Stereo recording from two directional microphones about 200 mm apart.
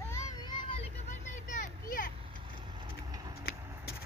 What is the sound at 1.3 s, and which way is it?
Vehicle, 40° left (ahead or behind).